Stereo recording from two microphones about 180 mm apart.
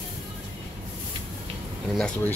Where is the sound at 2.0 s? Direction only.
5° left (ahead or behind).